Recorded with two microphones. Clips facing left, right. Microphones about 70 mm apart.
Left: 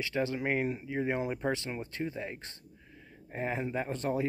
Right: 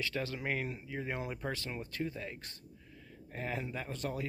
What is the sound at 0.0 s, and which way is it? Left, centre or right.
Speech, left.